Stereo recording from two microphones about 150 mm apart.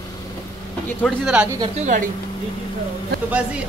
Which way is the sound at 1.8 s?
55° right (ahead or behind).